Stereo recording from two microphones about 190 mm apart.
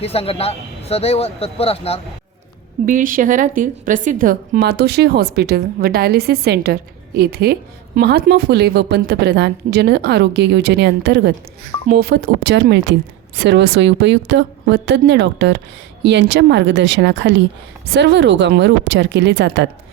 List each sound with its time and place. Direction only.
0.0 s speech: 30° left (ahead or behind)
2.8 s a woman's voice: 45° right (ahead or behind); by 19.6 s 65° right (ahead or behind)